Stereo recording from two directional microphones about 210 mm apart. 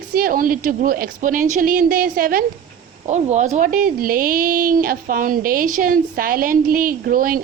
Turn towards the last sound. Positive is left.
turn(degrees=-40)  # may be behind; listen again after turning